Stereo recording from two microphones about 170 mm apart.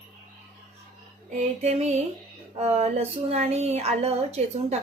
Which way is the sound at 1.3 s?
40° right (ahead or behind).